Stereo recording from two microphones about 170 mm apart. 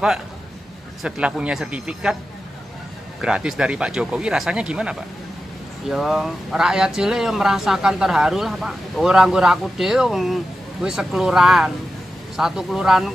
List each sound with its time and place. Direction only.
1.0 s speech: 5° right (ahead or behind)
3.2 s speech: 5° right (ahead or behind)